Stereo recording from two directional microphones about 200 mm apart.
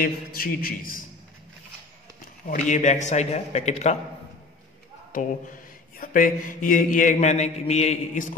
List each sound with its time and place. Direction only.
0.0 s a man's voice: 45° left (ahead or behind)
2.4 s mantra: 40° left (ahead or behind)
5.9 s mantra: 40° left (ahead or behind)